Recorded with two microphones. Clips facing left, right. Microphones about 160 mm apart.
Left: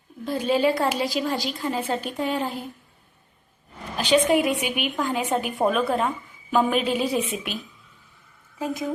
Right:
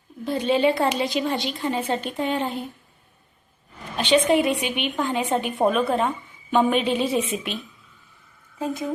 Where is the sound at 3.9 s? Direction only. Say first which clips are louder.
Right 1 dB; 5° left (ahead or behind).